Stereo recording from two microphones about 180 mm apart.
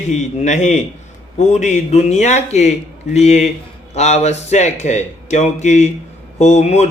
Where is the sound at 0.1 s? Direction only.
40° left (ahead or behind).